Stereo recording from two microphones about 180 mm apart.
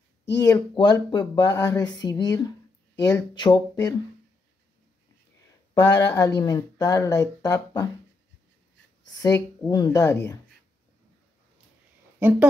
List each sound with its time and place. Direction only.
0.4 s speech: 20° left (ahead or behind)
5.9 s speech: 15° left (ahead or behind)
9.2 s speech: 20° left (ahead or behind)
12.2 s speech: 10° right (ahead or behind)